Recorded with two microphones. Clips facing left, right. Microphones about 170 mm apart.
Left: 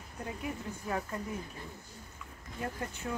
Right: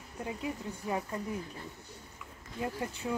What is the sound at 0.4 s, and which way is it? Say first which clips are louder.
Speech: right 1 dB; 15° right (ahead or behind).